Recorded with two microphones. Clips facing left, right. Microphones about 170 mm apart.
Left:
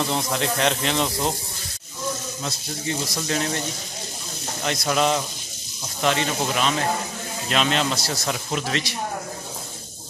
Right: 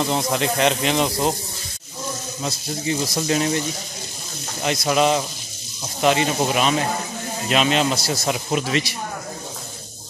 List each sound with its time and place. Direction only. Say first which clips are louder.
0.0 s speech: right 3 dB; 5° right (ahead or behind)
3.2 s speech: right 5 dB; 15° right (ahead or behind)
4.6 s speech: right 3 dB; 10° right (ahead or behind)